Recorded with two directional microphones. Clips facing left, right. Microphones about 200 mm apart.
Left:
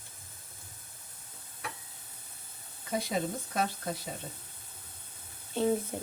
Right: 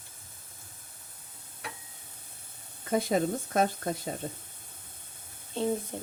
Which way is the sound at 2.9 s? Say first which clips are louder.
Right 5 dB; 50° right (ahead or behind).